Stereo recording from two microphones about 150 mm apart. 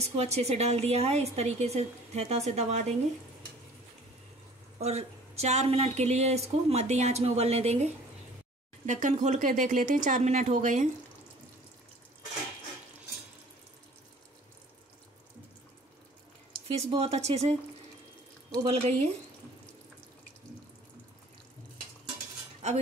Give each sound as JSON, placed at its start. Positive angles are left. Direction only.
{"t": 0.0, "sound": "speech", "side_deg": -45}
{"t": 4.7, "sound": "speech", "side_deg": -45}
{"t": 16.6, "sound": "speech", "side_deg": -45}
{"t": 18.6, "sound": "speech", "side_deg": -45}
{"t": 22.6, "sound": "speech", "side_deg": -50}